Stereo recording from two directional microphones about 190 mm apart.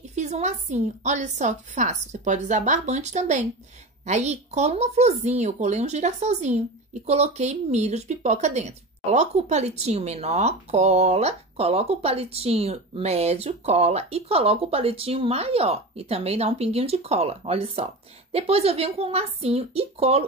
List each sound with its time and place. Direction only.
0.1 s speech: 35° right (ahead or behind)